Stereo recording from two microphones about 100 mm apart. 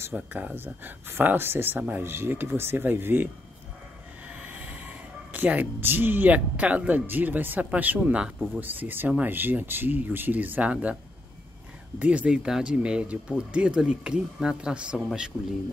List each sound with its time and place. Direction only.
0.1 s speech: 15° right (ahead or behind)
4.3 s train: 15° right (ahead or behind)
5.3 s speech: 15° right (ahead or behind)
12.0 s speech: 15° right (ahead or behind)